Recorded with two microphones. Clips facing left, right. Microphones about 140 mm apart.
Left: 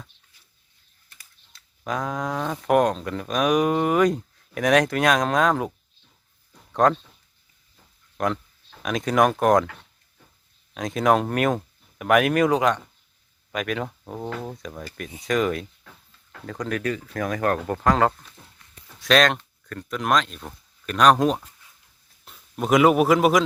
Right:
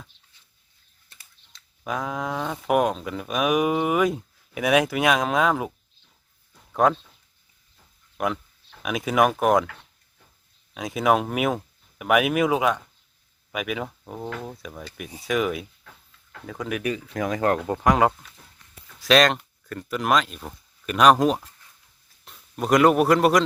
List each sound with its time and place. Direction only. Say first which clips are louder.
1.8 s speech: left 1 dB; 5° right (ahead or behind)
6.8 s speech: left 1 dB; 5° right (ahead or behind)
8.2 s speech: left 1 dB; 5° right (ahead or behind)
10.8 s speech: left 1 dB; 5° right (ahead or behind)
18.9 s speech: right 1 dB; centre (ahead or behind)